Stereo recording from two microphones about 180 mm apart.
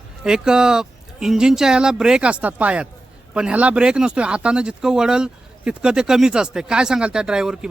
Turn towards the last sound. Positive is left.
turn(degrees=-5)  # may be behind; listen again after turning